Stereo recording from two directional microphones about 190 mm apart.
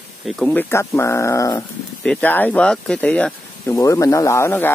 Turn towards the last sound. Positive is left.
turn(degrees=15)  # may be behind; listen again after turning